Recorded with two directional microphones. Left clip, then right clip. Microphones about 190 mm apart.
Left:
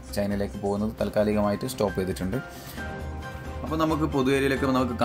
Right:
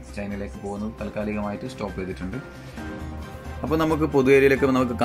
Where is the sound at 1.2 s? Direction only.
40° left (ahead or behind).